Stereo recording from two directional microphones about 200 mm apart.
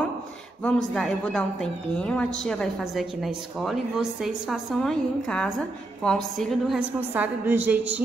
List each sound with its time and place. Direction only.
0.7 s a woman's voice: centre (ahead or behind)